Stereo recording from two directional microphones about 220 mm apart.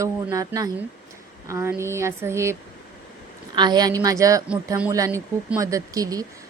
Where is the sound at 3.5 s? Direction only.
20° right (ahead or behind).